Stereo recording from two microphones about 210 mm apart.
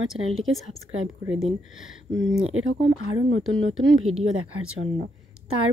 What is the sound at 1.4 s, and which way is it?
Speech, 65° right (ahead or behind).